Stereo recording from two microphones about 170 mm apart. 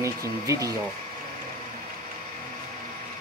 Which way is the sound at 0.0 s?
20° right (ahead or behind).